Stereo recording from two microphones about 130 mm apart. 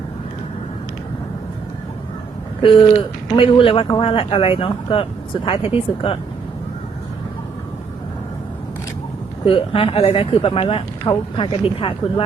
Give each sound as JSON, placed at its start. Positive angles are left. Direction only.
{"t": 2.6, "sound": "speech", "side_deg": 40}
{"t": 9.4, "sound": "speech", "side_deg": 45}